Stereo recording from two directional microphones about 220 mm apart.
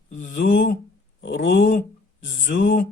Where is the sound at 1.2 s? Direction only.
55° left (ahead or behind).